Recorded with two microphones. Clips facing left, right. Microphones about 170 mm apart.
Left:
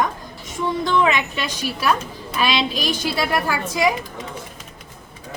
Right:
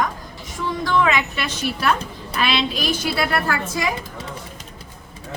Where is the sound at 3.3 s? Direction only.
15° left (ahead or behind).